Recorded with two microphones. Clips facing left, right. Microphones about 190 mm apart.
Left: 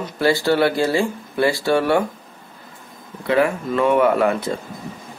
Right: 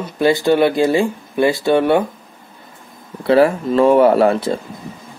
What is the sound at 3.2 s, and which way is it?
Speech, 35° right (ahead or behind).